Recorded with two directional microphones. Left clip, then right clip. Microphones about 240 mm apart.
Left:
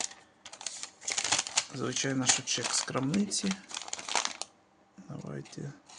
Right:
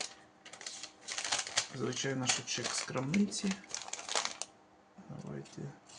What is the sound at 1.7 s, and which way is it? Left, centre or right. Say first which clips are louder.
Speech: left 4 dB; left.